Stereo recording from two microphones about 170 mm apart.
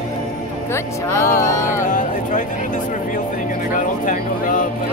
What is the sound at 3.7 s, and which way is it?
Speech, 50° left (ahead or behind).